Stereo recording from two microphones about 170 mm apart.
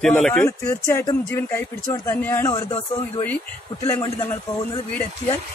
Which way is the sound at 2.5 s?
30° left (ahead or behind).